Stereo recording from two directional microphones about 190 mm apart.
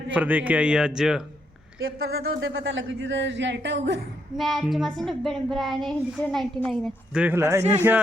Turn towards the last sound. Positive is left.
turn(degrees=-10)  # may be behind; listen again after turning